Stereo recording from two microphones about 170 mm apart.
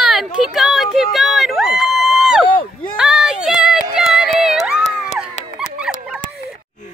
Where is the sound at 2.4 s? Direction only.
30° left (ahead or behind).